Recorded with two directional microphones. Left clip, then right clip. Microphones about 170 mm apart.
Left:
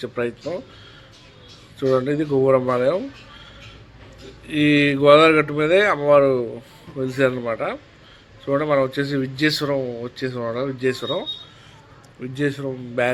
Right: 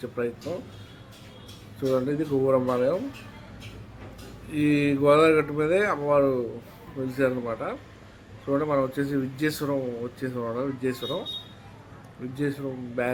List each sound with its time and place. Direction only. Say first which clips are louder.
0.0 s a man's voice: left 5 dB; 15° left (ahead or behind)
1.9 s a man's voice: left 6 dB; 15° left (ahead or behind)
4.5 s a man's voice: left 6 dB; 10° left (ahead or behind)
12.2 s a man's voice: left 6 dB; 10° left (ahead or behind)